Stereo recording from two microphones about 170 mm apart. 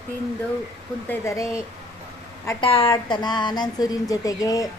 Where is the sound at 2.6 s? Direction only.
30° left (ahead or behind).